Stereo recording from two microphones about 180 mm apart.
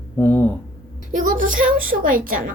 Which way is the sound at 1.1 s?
45° right (ahead or behind).